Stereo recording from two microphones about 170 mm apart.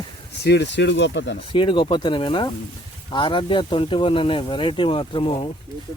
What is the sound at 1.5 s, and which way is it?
Speech, 30° left (ahead or behind).